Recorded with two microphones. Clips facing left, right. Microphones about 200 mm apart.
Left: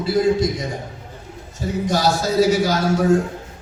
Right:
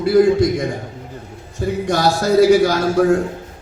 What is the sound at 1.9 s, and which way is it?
A man's voice, 60° right (ahead or behind).